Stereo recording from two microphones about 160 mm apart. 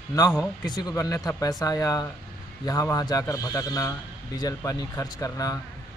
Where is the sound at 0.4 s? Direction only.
25° left (ahead or behind).